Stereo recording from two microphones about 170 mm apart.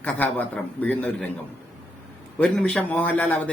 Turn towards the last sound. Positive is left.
turn(degrees=10)  # may be behind; listen again after turning